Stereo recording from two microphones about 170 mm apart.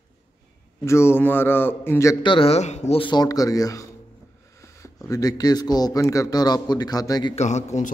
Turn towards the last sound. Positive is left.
turn(degrees=45)  # may be behind; listen again after turning